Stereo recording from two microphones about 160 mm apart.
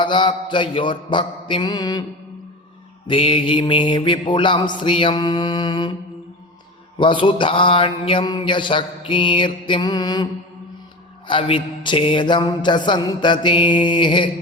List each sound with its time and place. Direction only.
0.0 s mantra: 30° left (ahead or behind)
3.1 s mantra: 35° left (ahead or behind)
7.0 s mantra: 30° left (ahead or behind)
11.3 s mantra: 30° left (ahead or behind)